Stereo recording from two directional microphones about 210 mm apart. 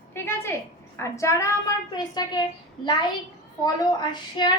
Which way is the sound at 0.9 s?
15° left (ahead or behind).